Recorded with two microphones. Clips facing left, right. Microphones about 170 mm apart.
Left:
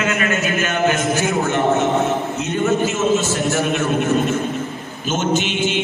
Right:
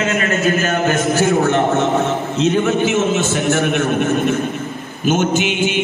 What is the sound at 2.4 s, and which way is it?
A man's voice, 80° right.